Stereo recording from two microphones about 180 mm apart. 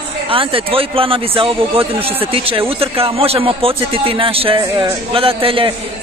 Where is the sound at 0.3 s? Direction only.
30° right (ahead or behind).